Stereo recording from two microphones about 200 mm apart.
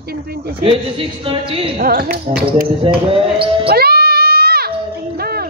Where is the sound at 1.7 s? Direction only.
45° right (ahead or behind).